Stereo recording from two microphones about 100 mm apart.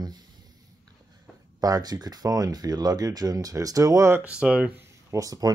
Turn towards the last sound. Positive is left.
turn(degrees=-35)  # may be behind; listen again after turning